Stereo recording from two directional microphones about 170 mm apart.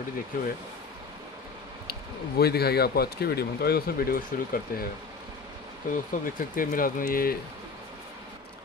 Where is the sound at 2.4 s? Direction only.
70° left (ahead or behind).